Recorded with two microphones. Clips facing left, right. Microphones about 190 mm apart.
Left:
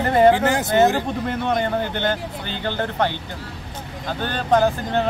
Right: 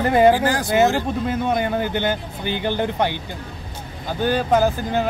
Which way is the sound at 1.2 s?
10° right (ahead or behind).